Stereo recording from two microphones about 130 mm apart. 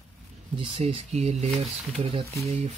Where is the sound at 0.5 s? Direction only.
45° right (ahead or behind).